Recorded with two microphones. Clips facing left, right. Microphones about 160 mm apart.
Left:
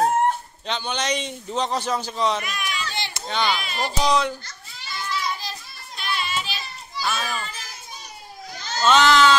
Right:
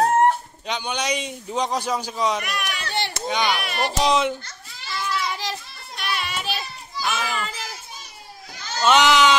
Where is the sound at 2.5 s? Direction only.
70° right (ahead or behind).